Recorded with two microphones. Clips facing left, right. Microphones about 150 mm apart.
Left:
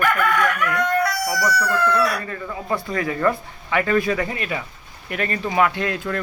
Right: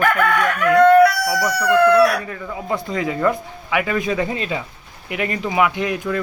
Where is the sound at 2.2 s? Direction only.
15° right (ahead or behind).